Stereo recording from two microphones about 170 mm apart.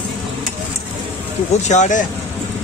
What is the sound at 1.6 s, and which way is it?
Speech, 45° left (ahead or behind).